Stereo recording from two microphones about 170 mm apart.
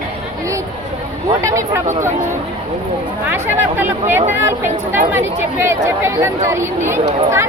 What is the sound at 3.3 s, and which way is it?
Speech, 10° right (ahead or behind).